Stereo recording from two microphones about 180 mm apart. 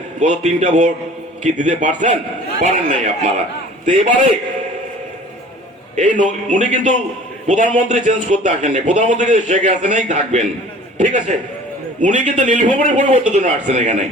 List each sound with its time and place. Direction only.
0.2 s a man's voice: 40° right (ahead or behind)
6.0 s a man's voice: 45° right (ahead or behind)
12.0 s a man's voice: 40° right (ahead or behind)